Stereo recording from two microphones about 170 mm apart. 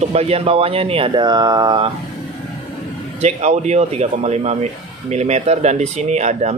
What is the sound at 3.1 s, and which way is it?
Speech, 40° right (ahead or behind).